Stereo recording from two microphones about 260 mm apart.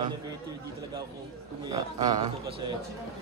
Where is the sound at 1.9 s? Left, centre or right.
Centre.